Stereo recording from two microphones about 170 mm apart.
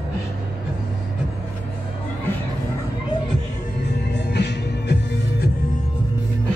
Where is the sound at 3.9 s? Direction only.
80° left.